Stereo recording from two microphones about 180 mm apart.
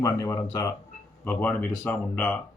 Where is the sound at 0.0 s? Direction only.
20° left (ahead or behind).